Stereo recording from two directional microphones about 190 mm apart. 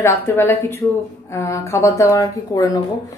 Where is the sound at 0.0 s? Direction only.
15° left (ahead or behind).